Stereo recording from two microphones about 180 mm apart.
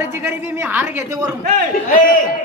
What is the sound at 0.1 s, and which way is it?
A woman's voice, 10° right (ahead or behind).